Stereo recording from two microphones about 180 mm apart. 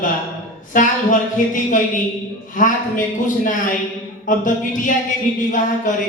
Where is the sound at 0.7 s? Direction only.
45° left (ahead or behind).